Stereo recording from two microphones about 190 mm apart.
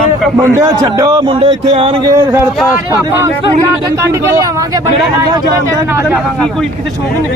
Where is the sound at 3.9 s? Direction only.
15° right (ahead or behind).